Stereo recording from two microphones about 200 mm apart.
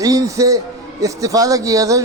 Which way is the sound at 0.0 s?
15° right (ahead or behind).